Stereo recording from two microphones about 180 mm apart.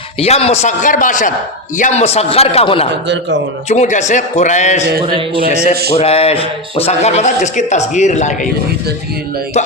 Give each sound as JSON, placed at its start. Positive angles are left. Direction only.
{"t": 0.2, "sound": "a man's voice", "side_deg": 35}
{"t": 5.4, "sound": "a man's voice", "side_deg": -60}
{"t": 6.0, "sound": "speech", "side_deg": 35}